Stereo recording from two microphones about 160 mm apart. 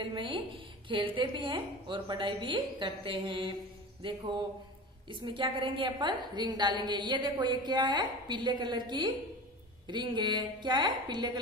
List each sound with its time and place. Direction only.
0.0 s a woman's voice: 30° right (ahead or behind)
5.2 s a woman's voice: 30° right (ahead or behind)